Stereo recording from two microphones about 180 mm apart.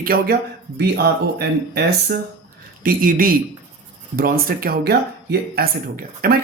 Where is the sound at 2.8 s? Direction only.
50° right (ahead or behind).